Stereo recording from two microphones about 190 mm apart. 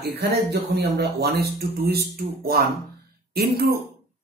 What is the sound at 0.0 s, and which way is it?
Speech, 60° right (ahead or behind).